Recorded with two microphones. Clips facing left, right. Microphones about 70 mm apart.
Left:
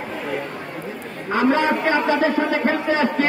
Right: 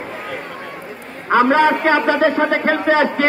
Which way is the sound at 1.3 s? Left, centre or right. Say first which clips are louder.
Right 5 dB; right.